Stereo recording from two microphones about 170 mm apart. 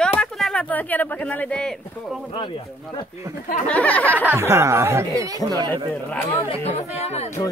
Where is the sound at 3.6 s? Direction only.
10° left (ahead or behind).